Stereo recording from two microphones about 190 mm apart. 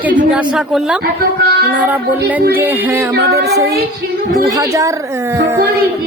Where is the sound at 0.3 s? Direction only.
5° right (ahead or behind).